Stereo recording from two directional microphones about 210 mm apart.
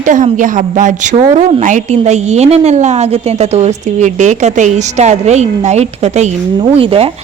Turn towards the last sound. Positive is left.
turn(degrees=-25)  # may be behind; listen again after turning